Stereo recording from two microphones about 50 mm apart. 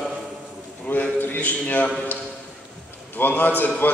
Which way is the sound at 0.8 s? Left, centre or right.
Left.